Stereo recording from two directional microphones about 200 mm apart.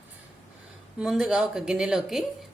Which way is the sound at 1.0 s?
5° right (ahead or behind).